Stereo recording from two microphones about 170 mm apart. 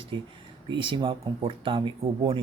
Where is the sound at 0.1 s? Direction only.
30° right (ahead or behind).